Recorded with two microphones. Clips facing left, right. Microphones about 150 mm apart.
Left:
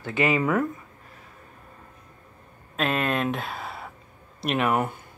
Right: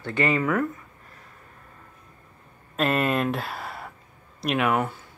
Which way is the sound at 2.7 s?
5° right (ahead or behind).